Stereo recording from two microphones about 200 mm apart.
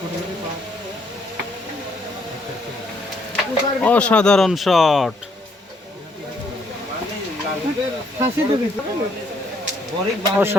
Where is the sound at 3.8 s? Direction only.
5° left (ahead or behind).